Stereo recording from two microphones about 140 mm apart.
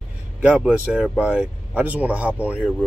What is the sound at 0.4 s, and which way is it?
Speech, 5° right (ahead or behind).